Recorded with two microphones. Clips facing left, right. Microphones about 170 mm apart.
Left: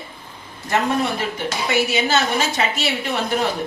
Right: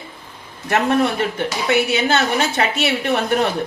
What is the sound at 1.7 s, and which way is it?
Speech, 60° right (ahead or behind).